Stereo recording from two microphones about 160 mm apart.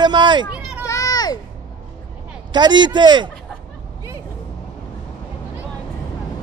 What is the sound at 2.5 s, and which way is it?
Speech, 30° right (ahead or behind).